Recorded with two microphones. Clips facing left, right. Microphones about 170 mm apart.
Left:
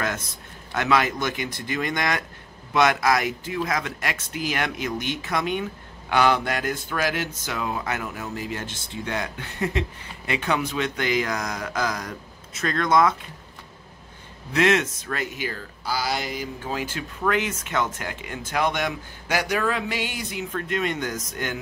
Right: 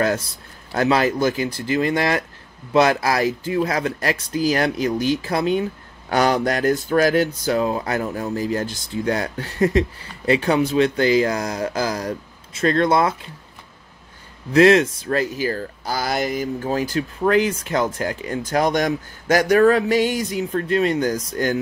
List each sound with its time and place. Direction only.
0.0 s speech: 35° right (ahead or behind)
14.5 s speech: 35° right (ahead or behind)